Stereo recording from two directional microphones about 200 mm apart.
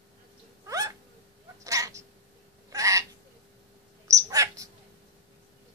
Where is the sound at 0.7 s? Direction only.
15° right (ahead or behind).